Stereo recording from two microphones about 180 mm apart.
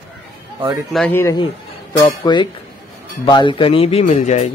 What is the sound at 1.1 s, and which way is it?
A man's voice, 15° left (ahead or behind).